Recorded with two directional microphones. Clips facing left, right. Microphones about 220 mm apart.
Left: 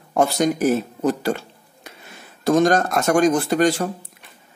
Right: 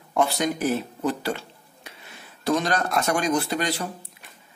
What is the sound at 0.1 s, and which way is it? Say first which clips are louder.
Speech: left 5 dB; 45° left (ahead or behind).